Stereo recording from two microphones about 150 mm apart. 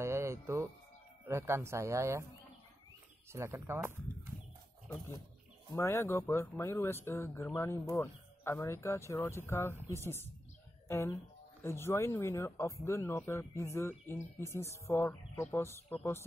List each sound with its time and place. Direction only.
0.0 s music: 20° right (ahead or behind)
1.2 s speech: 15° right (ahead or behind)
3.3 s speech: 15° right (ahead or behind)
5.8 s speech: 15° left (ahead or behind)